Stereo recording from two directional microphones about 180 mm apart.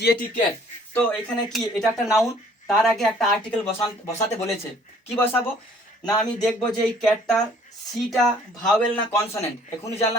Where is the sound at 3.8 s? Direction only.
35° left (ahead or behind).